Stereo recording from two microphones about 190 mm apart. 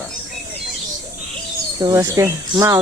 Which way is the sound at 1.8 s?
15° right (ahead or behind).